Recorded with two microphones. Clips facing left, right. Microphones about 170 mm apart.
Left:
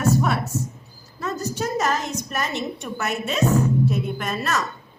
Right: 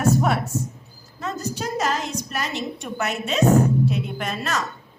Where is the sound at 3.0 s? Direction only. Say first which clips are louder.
Even; 50° left (ahead or behind).